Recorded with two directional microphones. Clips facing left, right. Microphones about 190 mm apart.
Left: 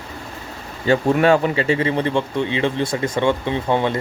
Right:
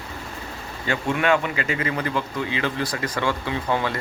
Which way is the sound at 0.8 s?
35° left (ahead or behind).